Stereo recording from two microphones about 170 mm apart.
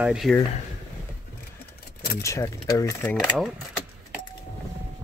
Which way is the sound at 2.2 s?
20° left (ahead or behind).